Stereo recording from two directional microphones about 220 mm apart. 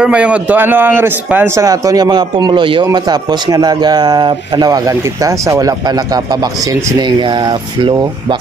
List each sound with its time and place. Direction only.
0.0 s a man's voice: 5° right (ahead or behind)